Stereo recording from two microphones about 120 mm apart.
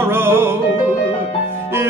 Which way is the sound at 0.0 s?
20° right (ahead or behind).